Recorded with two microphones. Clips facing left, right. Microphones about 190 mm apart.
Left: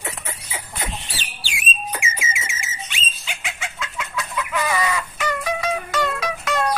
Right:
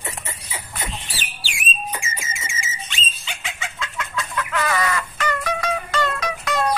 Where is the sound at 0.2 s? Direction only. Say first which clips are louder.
Left 1 dB; centre (ahead or behind).